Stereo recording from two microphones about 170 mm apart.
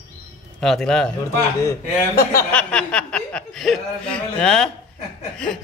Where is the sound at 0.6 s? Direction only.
Centre (ahead or behind).